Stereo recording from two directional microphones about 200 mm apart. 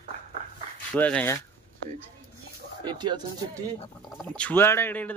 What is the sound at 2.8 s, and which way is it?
Speech, 20° right (ahead or behind).